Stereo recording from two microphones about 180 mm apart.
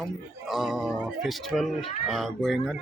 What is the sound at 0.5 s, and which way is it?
Speech, centre (ahead or behind).